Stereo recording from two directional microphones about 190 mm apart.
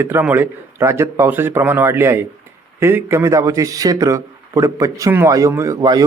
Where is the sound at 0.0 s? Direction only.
10° right (ahead or behind).